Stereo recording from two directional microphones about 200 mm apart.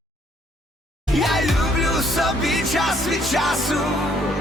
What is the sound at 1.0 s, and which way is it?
Music, centre (ahead or behind).